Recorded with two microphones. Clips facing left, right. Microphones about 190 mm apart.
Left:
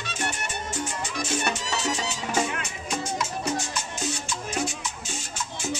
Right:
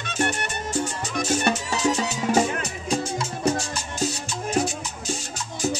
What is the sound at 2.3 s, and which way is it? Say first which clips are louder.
Music: right 4 dB; 35° right (ahead or behind).